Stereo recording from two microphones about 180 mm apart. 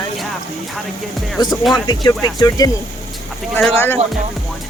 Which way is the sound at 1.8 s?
25° left (ahead or behind).